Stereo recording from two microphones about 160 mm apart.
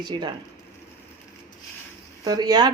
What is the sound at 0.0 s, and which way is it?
Speech, 30° right (ahead or behind).